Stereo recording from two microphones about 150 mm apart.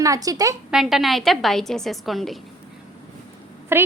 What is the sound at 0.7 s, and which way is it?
A woman's voice, centre (ahead or behind).